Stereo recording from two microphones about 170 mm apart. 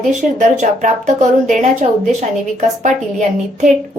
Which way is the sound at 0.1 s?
45° right (ahead or behind).